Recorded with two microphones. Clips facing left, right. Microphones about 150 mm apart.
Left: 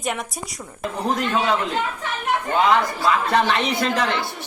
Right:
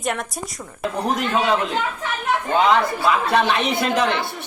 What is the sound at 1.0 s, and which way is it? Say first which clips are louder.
Speech: even; 15° right (ahead or behind).